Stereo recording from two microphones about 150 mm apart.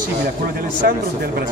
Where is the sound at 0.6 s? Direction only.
90° right.